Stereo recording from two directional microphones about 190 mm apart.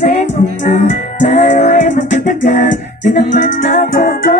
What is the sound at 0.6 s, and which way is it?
Music, 40° left (ahead or behind).